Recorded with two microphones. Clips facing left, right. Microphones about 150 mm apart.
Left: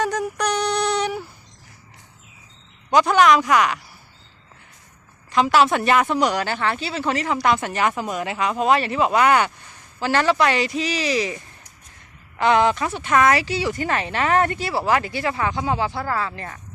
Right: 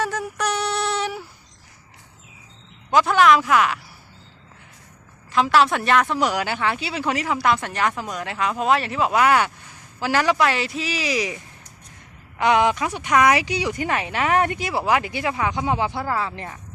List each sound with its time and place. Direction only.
0.0 s a sound: 5° right (ahead or behind)
2.9 s speech: centre (ahead or behind)
5.3 s speech: centre (ahead or behind)
12.4 s speech: 10° right (ahead or behind)